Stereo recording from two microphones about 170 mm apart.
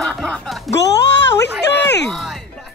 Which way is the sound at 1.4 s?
90° left.